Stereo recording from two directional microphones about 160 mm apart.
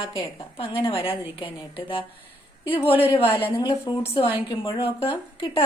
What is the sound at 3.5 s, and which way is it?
A woman's voice, 25° left (ahead or behind).